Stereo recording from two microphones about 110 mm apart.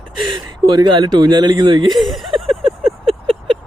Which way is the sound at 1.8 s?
Centre (ahead or behind).